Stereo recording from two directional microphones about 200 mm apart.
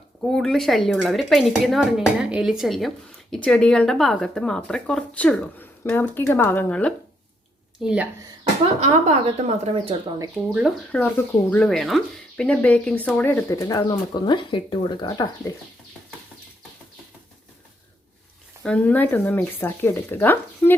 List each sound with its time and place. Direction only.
0.3 s speech: 5° left (ahead or behind)
8.8 s speech: 30° right (ahead or behind)
10.2 s speech: 5° right (ahead or behind)
10.9 s speech: 10° left (ahead or behind)
18.6 s speech: 5° left (ahead or behind)